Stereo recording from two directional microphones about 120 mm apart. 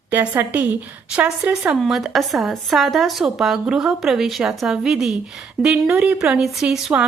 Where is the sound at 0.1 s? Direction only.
15° right (ahead or behind).